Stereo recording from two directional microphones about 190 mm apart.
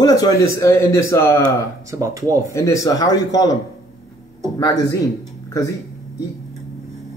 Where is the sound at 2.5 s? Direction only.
15° left (ahead or behind).